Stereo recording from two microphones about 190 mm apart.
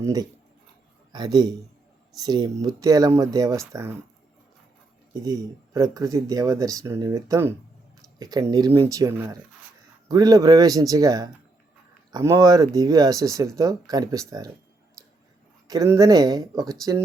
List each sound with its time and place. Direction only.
0.0 s speech: 20° right (ahead or behind)
5.1 s speech: 20° right (ahead or behind)
15.6 s speech: 20° right (ahead or behind)